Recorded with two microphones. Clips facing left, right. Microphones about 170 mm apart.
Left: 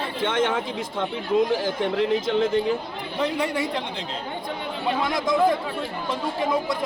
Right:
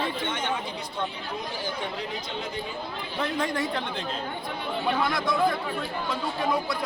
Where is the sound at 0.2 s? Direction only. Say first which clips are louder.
Left 7 dB; 90° left.